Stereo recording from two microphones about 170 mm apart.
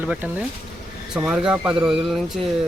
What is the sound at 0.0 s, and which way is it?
Speech, 10° right (ahead or behind).